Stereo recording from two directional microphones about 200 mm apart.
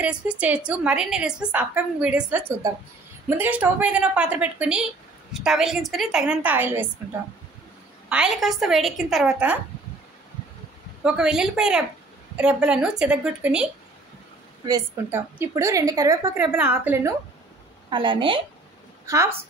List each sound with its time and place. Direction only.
0.0 s a woman's voice: 5° right (ahead or behind)
8.1 s a woman's voice: 5° right (ahead or behind)
11.1 s a woman's voice: 5° right (ahead or behind)
14.7 s a woman's voice: 10° right (ahead or behind)
17.8 s a woman's voice: 25° right (ahead or behind)
19.0 s a woman's voice: 15° right (ahead or behind)